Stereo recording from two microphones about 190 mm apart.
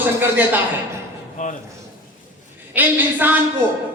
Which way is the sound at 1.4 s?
40° left (ahead or behind).